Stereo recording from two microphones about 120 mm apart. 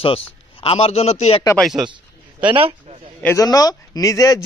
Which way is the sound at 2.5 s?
50° right (ahead or behind).